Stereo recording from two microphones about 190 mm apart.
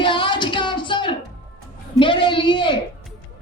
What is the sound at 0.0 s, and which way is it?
Music, 25° left (ahead or behind).